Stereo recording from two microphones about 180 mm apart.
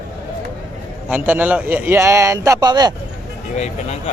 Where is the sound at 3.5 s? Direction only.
40° left (ahead or behind).